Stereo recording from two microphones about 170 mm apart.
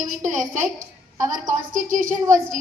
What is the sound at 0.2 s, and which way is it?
A woman's voice, 50° right (ahead or behind).